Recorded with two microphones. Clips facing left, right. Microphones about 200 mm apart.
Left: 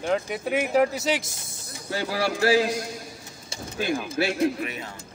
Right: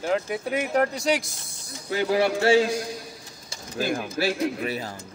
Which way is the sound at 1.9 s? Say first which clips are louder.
Right 4 dB; 20° right (ahead or behind).